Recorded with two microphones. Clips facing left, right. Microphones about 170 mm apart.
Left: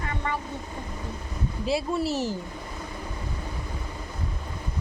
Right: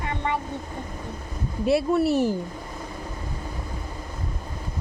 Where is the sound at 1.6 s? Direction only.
60° right (ahead or behind).